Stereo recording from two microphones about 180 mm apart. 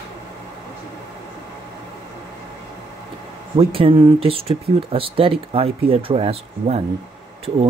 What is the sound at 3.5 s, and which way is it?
Speech, 30° right (ahead or behind).